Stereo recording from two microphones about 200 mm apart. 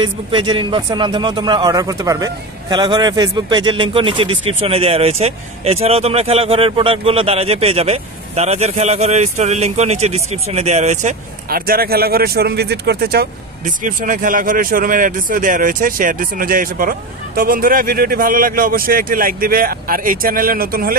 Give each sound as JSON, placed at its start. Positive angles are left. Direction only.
{"t": 0.0, "sound": "speech", "side_deg": -25}